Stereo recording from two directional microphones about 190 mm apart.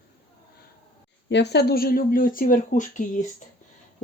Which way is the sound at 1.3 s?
65° left (ahead or behind).